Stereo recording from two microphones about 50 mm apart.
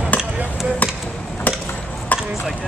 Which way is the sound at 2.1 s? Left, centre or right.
Left.